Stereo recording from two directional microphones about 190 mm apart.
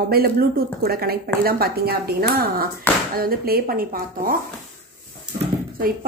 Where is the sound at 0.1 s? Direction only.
50° right (ahead or behind).